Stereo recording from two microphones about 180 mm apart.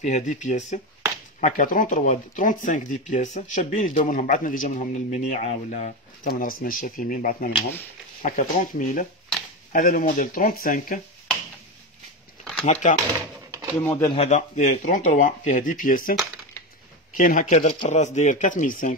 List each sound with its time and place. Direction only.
0.0 s speech: 40° left (ahead or behind)
12.8 s speech: 40° left (ahead or behind)
13.7 s speech: 10° left (ahead or behind)
14.0 s speech: 35° left (ahead or behind); by 16.2 s 50° left (ahead or behind)
17.2 s speech: 50° left (ahead or behind)